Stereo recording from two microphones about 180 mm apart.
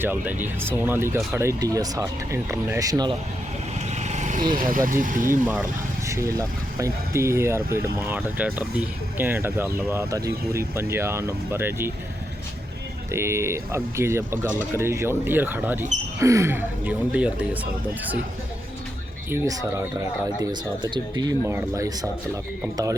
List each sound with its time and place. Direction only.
0.0 s speech: 10° right (ahead or behind)
3.9 s vehicle: 40° right (ahead or behind)
4.5 s speech: 50° right (ahead or behind)
6.1 s speech: 15° right (ahead or behind)
13.1 s speech: 15° right (ahead or behind)
19.3 s speech: 15° right (ahead or behind)